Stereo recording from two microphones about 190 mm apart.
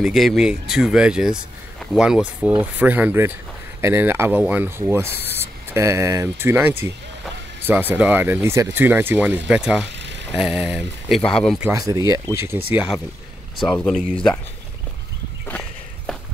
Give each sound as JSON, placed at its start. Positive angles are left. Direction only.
{"t": 0.0, "sound": "speech", "side_deg": 0}
{"t": 9.9, "sound": "vehicle", "side_deg": -70}
{"t": 10.3, "sound": "speech", "side_deg": -5}
{"t": 11.6, "sound": "speech", "side_deg": -15}
{"t": 16.1, "sound": "walk", "side_deg": 0}